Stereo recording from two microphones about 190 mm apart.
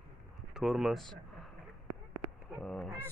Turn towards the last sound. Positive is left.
turn(degrees=5)  # may be behind; listen again after turning